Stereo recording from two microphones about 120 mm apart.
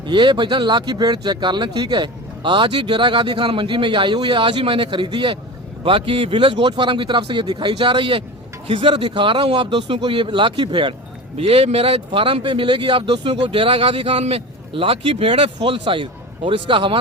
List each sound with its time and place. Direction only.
0.0 s a man's voice: 40° right (ahead or behind)
11.3 s a man's voice: 55° right (ahead or behind)